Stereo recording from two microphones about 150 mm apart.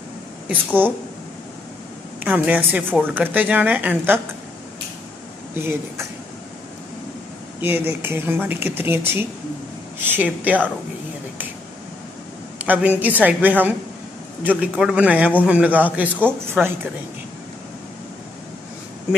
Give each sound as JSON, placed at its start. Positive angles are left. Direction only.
{"t": 0.5, "sound": "a woman's voice", "side_deg": -10}
{"t": 2.2, "sound": "a woman's voice", "side_deg": -10}
{"t": 5.5, "sound": "a woman's voice", "side_deg": -15}
{"t": 7.6, "sound": "a woman's voice", "side_deg": -15}
{"t": 12.5, "sound": "a woman's voice", "side_deg": -10}